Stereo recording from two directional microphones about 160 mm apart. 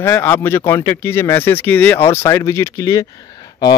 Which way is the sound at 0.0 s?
15° left (ahead or behind).